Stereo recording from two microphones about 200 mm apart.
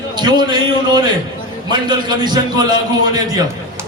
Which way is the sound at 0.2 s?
20° right (ahead or behind).